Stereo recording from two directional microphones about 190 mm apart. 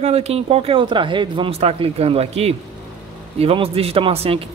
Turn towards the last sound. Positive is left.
turn(degrees=-30)  # may be behind; listen again after turning